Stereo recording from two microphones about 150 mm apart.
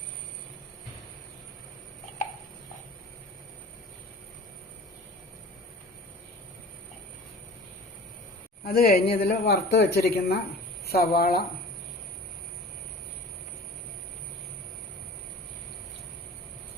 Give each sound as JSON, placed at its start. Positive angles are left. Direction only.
{"t": 8.6, "sound": "a man's voice", "side_deg": 90}